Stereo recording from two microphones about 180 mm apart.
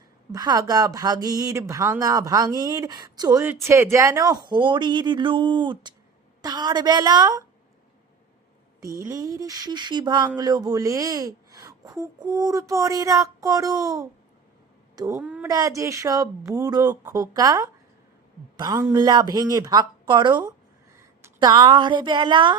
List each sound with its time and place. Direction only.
0.3 s speech: 20° right (ahead or behind)
9.0 s speech: 20° right (ahead or behind)
15.2 s a woman's voice: 10° right (ahead or behind)
15.4 s a woman's voice: 20° right (ahead or behind)